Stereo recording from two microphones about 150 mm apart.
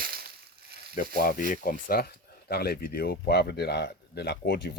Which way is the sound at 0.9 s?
70° left (ahead or behind).